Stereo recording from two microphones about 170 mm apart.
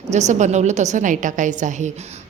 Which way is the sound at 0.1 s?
45° right (ahead or behind).